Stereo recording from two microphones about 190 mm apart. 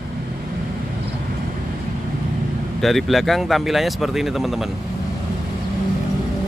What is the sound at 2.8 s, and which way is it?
Speech, centre (ahead or behind).